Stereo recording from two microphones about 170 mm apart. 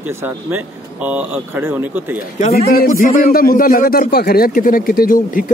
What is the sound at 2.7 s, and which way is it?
A man's voice, 55° left (ahead or behind).